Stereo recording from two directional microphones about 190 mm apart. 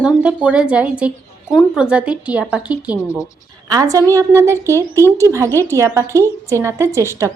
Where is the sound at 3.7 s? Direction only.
20° right (ahead or behind).